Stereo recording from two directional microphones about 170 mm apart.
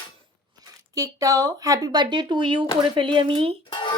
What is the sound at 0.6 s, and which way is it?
Speech, 20° right (ahead or behind).